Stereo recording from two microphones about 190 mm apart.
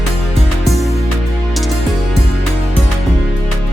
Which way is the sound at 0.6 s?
Centre (ahead or behind).